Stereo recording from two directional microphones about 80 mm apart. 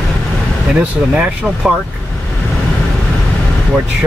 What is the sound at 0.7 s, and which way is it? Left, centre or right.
Speech, centre.